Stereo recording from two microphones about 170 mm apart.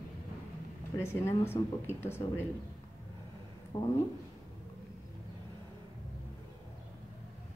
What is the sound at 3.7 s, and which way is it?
Speech, 30° left (ahead or behind).